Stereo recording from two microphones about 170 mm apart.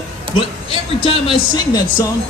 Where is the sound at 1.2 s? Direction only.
25° left (ahead or behind).